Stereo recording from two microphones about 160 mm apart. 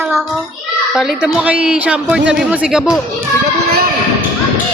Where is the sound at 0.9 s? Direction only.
Centre (ahead or behind).